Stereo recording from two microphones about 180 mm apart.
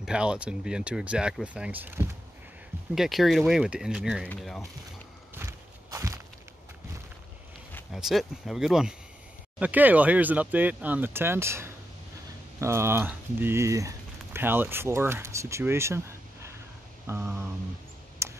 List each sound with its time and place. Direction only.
0.0 s speech: 5° right (ahead or behind)
5.3 s walk: 15° right (ahead or behind)
7.9 s speech: centre (ahead or behind)
17.0 s a sound: 15° right (ahead or behind)
18.2 s typing: 15° right (ahead or behind)